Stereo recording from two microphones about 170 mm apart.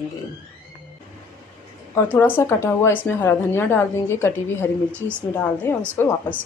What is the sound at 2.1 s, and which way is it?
A woman's voice, 10° left (ahead or behind).